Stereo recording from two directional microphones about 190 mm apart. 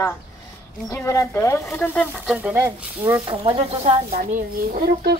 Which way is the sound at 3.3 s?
30° right (ahead or behind).